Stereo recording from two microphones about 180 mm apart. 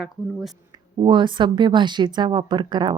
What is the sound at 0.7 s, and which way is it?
Speech, 25° right (ahead or behind).